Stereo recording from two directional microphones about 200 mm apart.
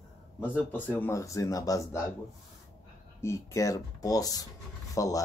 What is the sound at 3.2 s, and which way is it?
Speech, 15° left (ahead or behind).